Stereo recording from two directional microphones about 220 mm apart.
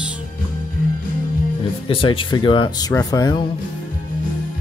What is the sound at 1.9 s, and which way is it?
Speech, 25° left (ahead or behind).